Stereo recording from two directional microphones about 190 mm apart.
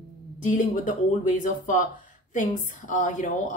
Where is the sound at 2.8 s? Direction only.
40° left (ahead or behind).